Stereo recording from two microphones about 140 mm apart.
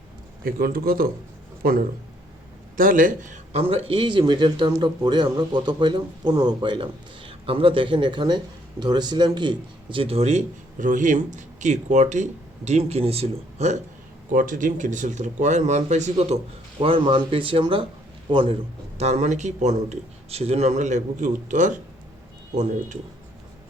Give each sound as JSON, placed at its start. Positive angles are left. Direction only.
{"t": 0.4, "sound": "a man's voice", "side_deg": -90}
{"t": 2.7, "sound": "speech", "side_deg": -80}
{"t": 3.6, "sound": "speech", "side_deg": -45}
{"t": 14.3, "sound": "speech", "side_deg": -70}
{"t": 16.8, "sound": "a man's voice", "side_deg": -40}
{"t": 18.9, "sound": "speech", "side_deg": -50}